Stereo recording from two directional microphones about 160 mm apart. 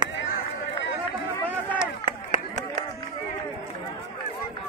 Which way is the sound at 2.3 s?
50° right (ahead or behind).